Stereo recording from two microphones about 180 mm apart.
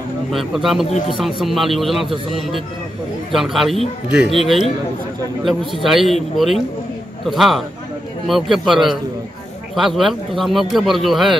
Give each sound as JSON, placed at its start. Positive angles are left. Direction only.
{"t": 0.3, "sound": "speech", "side_deg": 0}
{"t": 5.8, "sound": "speech", "side_deg": 0}